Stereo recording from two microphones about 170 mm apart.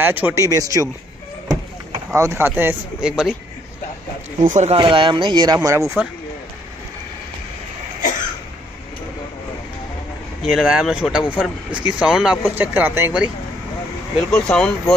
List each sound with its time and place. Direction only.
0.0 s speech: 10° right (ahead or behind)
2.1 s speech: 15° right (ahead or behind)
4.5 s speech: 45° right (ahead or behind)
4.7 s speech: 30° right (ahead or behind)
10.4 s speech: 5° right (ahead or behind)
14.3 s speech: 5° left (ahead or behind)